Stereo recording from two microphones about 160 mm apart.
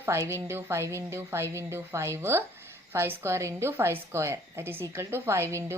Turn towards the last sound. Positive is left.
turn(degrees=-15)  # may be behind; listen again after turning